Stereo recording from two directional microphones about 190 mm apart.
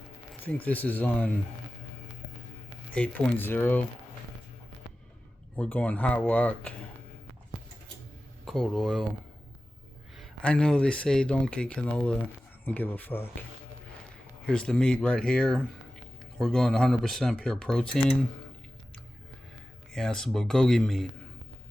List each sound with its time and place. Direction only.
0.4 s speech: 10° left (ahead or behind)
2.9 s speech: 5° left (ahead or behind)
5.5 s speech: 10° left (ahead or behind)
8.4 s speech: centre (ahead or behind)
10.2 s speech: 5° left (ahead or behind)
14.4 s speech: 5° left (ahead or behind)
19.9 s speech: 5° left (ahead or behind)